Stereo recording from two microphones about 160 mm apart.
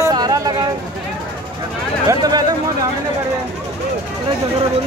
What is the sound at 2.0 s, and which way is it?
Speech, 25° right (ahead or behind).